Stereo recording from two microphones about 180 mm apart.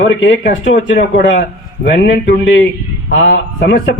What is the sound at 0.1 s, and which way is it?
A man's voice, 90° left.